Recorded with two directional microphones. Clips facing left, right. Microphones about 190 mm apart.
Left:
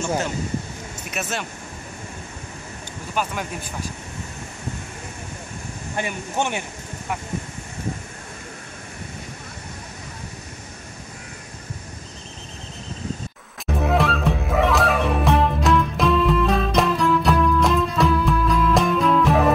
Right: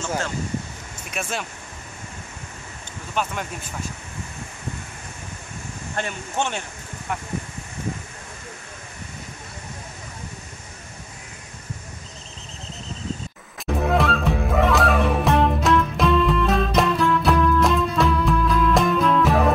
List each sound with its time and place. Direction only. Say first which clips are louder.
0.0 s speech: left 3 dB; 15° left (ahead or behind)
1.1 s speech: even; 5° left (ahead or behind)
3.2 s speech: even; 5° left (ahead or behind)
5.9 s speech: left 1 dB; 10° left (ahead or behind)
13.7 s music: even; centre (ahead or behind)